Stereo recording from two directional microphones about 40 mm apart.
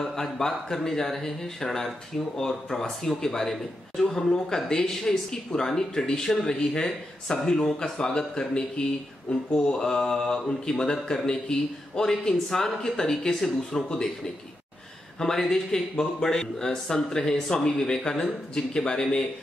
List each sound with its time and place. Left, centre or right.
0.0 s a man's voice: centre